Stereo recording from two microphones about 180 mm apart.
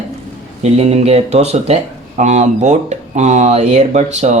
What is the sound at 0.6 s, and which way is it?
Speech, 35° right (ahead or behind).